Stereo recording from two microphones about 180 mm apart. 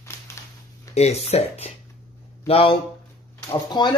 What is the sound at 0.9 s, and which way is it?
Speech, 35° left (ahead or behind).